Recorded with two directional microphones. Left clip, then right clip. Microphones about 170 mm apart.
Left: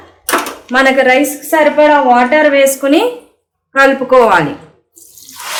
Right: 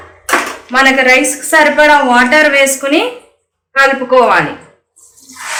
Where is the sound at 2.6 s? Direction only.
40° left (ahead or behind).